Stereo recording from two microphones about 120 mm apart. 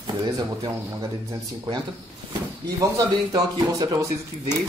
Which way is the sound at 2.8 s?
30° right (ahead or behind).